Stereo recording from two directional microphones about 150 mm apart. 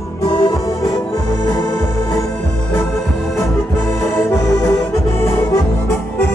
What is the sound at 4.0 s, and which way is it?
Accordion, 15° left (ahead or behind).